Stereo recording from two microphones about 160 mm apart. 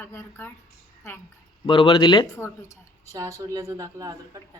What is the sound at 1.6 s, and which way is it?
Speech, 35° left (ahead or behind).